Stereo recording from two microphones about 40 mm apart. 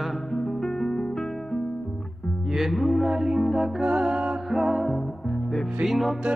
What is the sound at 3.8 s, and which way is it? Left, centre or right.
Music, right.